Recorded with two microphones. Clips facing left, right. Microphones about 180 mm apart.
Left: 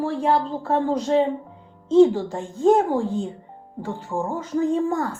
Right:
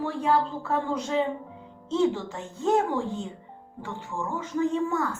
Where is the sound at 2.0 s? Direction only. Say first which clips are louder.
Left 10 dB; 50° left (ahead or behind).